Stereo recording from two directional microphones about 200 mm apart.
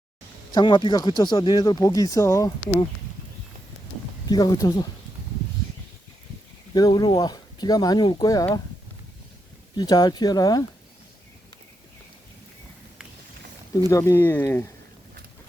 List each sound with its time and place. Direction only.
0.5 s speech: 25° left (ahead or behind)
4.3 s speech: 20° left (ahead or behind)
6.7 s speech: 20° left (ahead or behind)
9.7 s speech: 20° left (ahead or behind)
13.8 s speech: 15° left (ahead or behind)